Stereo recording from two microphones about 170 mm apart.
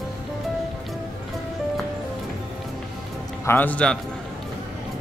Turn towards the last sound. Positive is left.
turn(degrees=10)  # may be behind; listen again after turning